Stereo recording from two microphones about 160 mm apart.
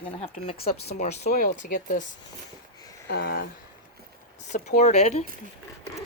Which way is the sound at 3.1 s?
80° left.